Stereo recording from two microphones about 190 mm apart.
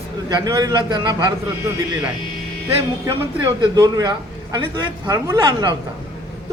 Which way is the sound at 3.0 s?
20° right (ahead or behind).